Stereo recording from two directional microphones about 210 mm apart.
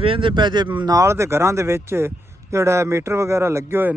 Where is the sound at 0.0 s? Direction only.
25° right (ahead or behind).